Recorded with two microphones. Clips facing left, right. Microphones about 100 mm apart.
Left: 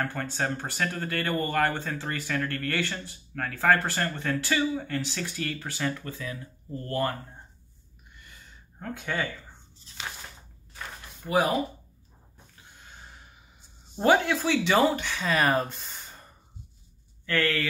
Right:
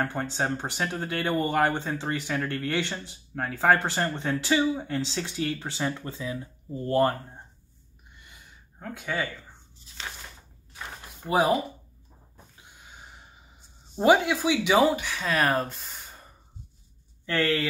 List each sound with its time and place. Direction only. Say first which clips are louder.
0.0 s speech: right 2 dB; 20° right (ahead or behind)
8.2 s a sound: left 1 dB; 15° right (ahead or behind)
8.7 s speech: even; 5° right (ahead or behind)
9.9 s a sound: even; 10° right (ahead or behind)
11.2 s speech: right 2 dB; 25° right (ahead or behind)
12.7 s snort: even; 10° right (ahead or behind)
13.9 s speech: right 2 dB; 10° right (ahead or behind)
17.3 s speech: right 1 dB; 20° right (ahead or behind)